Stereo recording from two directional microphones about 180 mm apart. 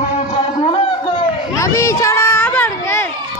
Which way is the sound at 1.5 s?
15° left (ahead or behind).